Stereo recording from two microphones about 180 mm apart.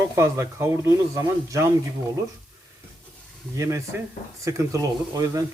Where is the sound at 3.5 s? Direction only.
15° right (ahead or behind).